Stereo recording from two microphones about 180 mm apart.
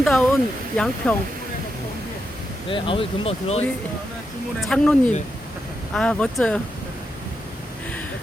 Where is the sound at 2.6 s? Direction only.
30° left (ahead or behind).